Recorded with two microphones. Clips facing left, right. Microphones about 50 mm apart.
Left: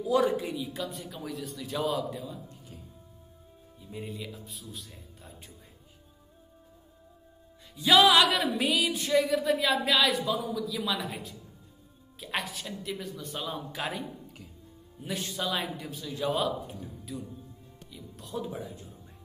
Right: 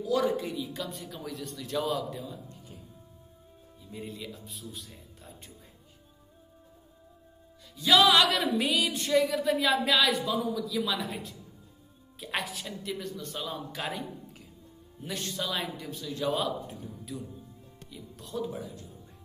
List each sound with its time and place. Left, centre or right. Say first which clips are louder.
0.0 s a woman's voice: left 2 dB; centre
0.5 s speech: left 1 dB; centre
3.8 s speech: left 1 dB; centre
7.8 s speech: left 1 dB; centre
18.3 s a man's voice: right 1 dB; centre